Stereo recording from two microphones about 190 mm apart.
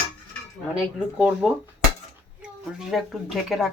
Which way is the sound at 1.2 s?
5° right (ahead or behind).